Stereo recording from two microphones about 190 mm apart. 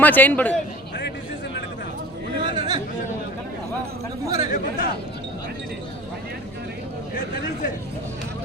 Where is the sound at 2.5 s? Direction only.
20° right (ahead or behind).